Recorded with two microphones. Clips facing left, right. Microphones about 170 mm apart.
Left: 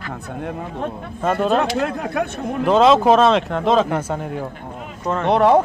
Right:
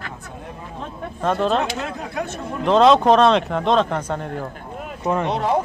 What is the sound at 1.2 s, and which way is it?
Speech, 5° left (ahead or behind).